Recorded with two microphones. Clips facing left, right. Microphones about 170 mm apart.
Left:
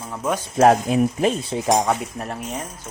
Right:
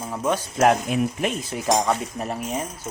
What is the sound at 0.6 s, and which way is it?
Stir, 30° left (ahead or behind).